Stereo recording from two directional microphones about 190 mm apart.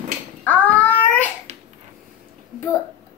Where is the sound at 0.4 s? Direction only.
10° left (ahead or behind).